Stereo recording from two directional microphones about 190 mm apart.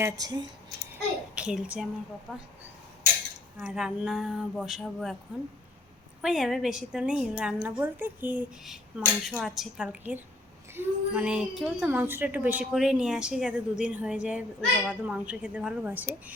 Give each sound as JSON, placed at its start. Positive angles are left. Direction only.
{"t": 0.0, "sound": "speech", "side_deg": -20}
{"t": 1.4, "sound": "a woman's voice", "side_deg": -5}
{"t": 3.6, "sound": "a woman's voice", "side_deg": -5}
{"t": 6.2, "sound": "a woman's voice", "side_deg": 0}